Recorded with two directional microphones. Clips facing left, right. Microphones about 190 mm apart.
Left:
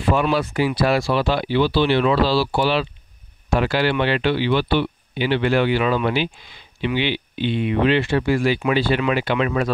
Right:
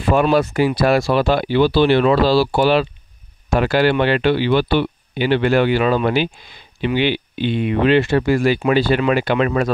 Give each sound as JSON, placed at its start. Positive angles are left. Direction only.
{"t": 0.1, "sound": "speech", "side_deg": -45}